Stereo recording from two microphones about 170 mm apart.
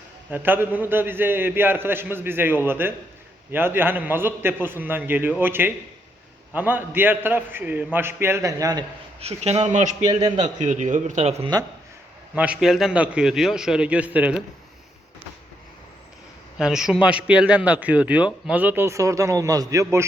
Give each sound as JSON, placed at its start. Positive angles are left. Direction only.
{"t": 0.3, "sound": "a man's voice", "side_deg": -10}
{"t": 9.2, "sound": "speech", "side_deg": -35}
{"t": 10.1, "sound": "a man's voice", "side_deg": -25}
{"t": 10.6, "sound": "a man's voice", "side_deg": -45}
{"t": 12.3, "sound": "a man's voice", "side_deg": -5}
{"t": 16.6, "sound": "a man's voice", "side_deg": -5}